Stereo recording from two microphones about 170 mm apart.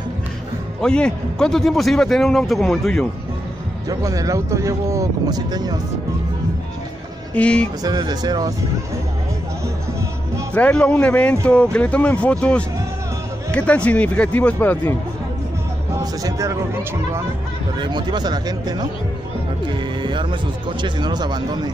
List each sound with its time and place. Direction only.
0.7 s a man's voice: 5° left (ahead or behind)
4.0 s speech: 20° right (ahead or behind)
7.3 s speech: 5° left (ahead or behind)
7.8 s speech: 25° right (ahead or behind)
10.5 s speech: 5° left (ahead or behind)
16.0 s speech: 20° right (ahead or behind)
19.8 s music: 30° right (ahead or behind)
20.8 s speech: 25° right (ahead or behind)